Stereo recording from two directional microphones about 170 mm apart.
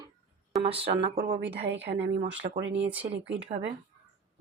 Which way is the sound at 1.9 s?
35° right (ahead or behind).